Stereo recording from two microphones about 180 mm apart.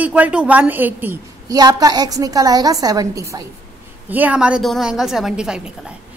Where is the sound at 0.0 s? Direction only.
5° right (ahead or behind).